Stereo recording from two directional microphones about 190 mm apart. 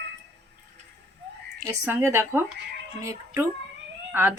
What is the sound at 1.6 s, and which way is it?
Speech, 15° right (ahead or behind).